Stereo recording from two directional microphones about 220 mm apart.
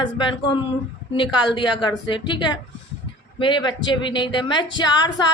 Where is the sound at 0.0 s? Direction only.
20° left (ahead or behind).